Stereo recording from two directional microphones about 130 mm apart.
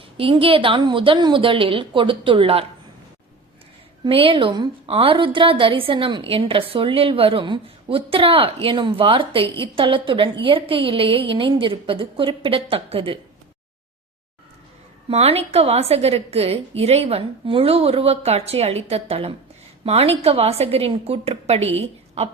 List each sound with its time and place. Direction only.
0.2 s a woman's voice: 45° right (ahead or behind)
4.0 s a woman's voice: 45° right (ahead or behind)
15.1 s a woman's voice: 50° right (ahead or behind)